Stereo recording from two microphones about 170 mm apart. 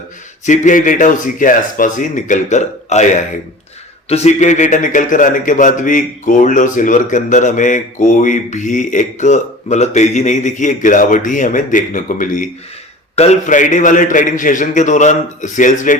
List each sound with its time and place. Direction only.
0.4 s a man's voice: 45° left (ahead or behind)